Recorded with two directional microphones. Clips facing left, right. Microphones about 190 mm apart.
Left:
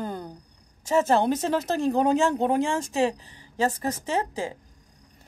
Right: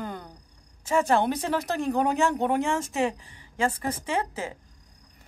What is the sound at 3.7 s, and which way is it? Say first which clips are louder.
Speech: left 2 dB; 40° left (ahead or behind).